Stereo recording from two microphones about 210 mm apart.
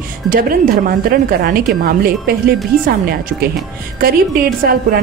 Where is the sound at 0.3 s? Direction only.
45° right (ahead or behind).